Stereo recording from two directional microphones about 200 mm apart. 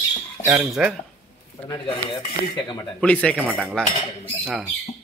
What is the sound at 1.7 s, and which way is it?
Speech, 25° left (ahead or behind).